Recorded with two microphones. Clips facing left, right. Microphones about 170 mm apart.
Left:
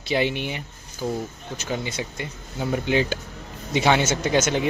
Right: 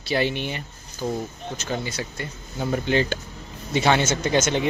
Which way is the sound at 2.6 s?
10° left (ahead or behind).